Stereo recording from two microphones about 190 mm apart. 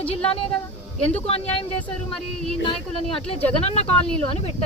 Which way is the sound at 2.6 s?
30° left (ahead or behind).